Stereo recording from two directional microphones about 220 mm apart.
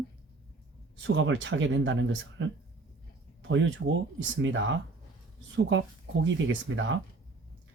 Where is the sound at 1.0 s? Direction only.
55° right (ahead or behind).